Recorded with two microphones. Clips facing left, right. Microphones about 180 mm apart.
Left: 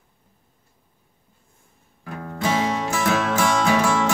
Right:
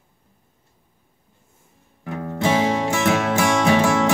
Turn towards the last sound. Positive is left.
turn(degrees=-25)  # may be behind; listen again after turning